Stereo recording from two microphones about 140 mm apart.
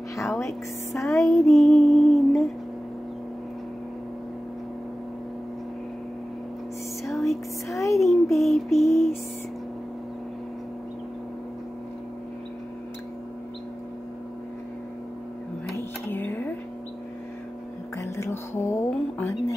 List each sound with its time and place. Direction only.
1.2 s music: centre (ahead or behind)
7.1 s music: centre (ahead or behind)
7.9 s child singing: centre (ahead or behind)
8.7 s a sound: centre (ahead or behind)
15.7 s a sound: 15° left (ahead or behind)
17.9 s music: 20° left (ahead or behind)